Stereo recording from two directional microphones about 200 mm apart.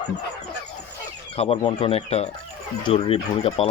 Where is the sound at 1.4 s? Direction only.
30° left (ahead or behind).